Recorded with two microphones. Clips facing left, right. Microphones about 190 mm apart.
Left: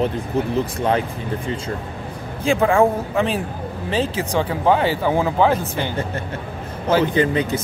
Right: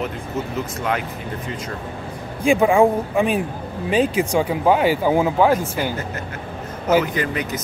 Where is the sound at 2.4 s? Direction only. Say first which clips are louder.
Right 1 dB; 15° right (ahead or behind).